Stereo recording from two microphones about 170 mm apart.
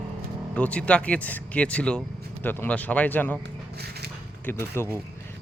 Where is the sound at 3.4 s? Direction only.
70° right (ahead or behind).